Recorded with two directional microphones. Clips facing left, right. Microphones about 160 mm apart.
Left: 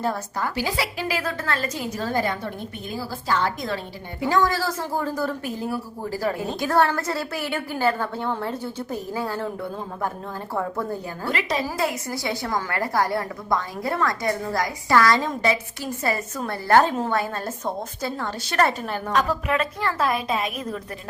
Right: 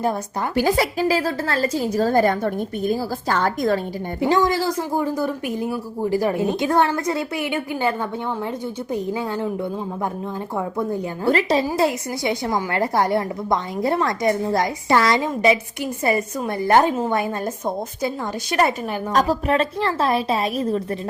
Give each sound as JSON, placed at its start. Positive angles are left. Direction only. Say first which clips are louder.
{"t": 0.5, "sound": "a woman's voice", "louder": "right 12 dB", "side_deg": -50}
{"t": 4.2, "sound": "a woman's voice", "louder": "right 3 dB", "side_deg": -20}
{"t": 10.5, "sound": "a woman's voice", "louder": "right 1 dB", "side_deg": -15}
{"t": 11.3, "sound": "a woman's voice", "louder": "right 7 dB", "side_deg": -35}
{"t": 19.1, "sound": "a woman's voice", "louder": "right 4 dB", "side_deg": -35}